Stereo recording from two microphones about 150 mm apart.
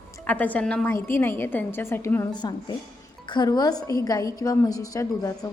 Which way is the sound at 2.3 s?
30° left (ahead or behind).